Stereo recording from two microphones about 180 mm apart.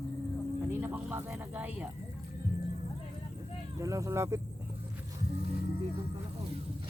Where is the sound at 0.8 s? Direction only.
10° right (ahead or behind).